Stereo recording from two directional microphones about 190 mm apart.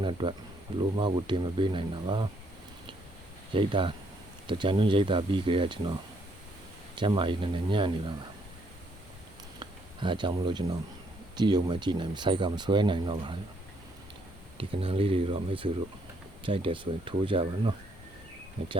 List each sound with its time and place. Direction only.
0.0 s speech: 25° right (ahead or behind)
3.5 s speech: 25° right (ahead or behind)
6.9 s speech: 25° right (ahead or behind)
9.6 s speech: 25° right (ahead or behind)
14.6 s speech: 30° right (ahead or behind)